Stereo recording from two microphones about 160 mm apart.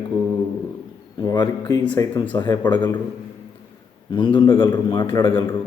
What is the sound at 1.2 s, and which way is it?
A man's voice, 25° left (ahead or behind).